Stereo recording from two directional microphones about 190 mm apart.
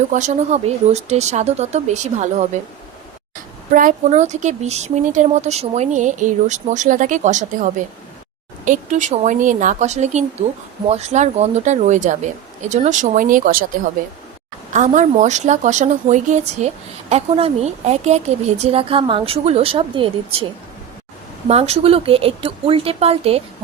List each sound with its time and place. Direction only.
0.1 s speech: 40° right (ahead or behind)
14.7 s a woman's voice: 40° right (ahead or behind)
21.4 s speech: 35° right (ahead or behind)